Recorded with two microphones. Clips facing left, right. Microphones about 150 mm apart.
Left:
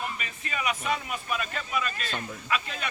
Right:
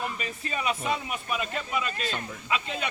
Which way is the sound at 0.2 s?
35° right (ahead or behind).